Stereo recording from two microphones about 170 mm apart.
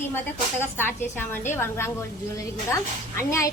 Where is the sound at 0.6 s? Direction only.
10° left (ahead or behind).